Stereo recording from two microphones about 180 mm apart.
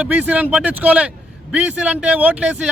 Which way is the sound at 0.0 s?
5° right (ahead or behind).